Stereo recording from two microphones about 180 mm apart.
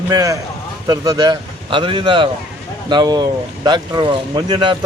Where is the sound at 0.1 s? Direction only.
20° right (ahead or behind).